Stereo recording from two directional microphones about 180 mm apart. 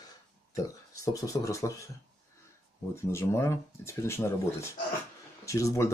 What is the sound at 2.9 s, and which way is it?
Speech, 15° left (ahead or behind).